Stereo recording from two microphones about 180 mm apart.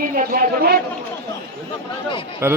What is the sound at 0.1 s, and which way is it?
Speech, 50° right (ahead or behind).